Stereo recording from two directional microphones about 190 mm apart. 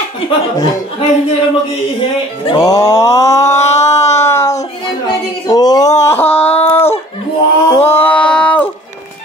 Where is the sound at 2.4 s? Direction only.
20° left (ahead or behind).